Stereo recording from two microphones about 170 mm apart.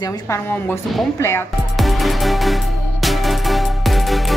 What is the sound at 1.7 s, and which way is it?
Music, centre (ahead or behind).